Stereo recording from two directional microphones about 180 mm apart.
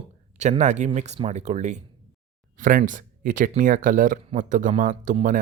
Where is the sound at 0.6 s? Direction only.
40° right (ahead or behind).